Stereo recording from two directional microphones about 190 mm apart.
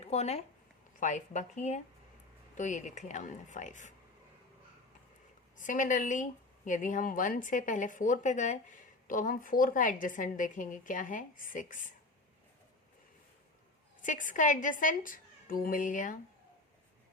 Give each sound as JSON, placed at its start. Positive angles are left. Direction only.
{"t": 0.0, "sound": "speech", "side_deg": 35}
{"t": 5.5, "sound": "speech", "side_deg": 45}
{"t": 14.0, "sound": "speech", "side_deg": 45}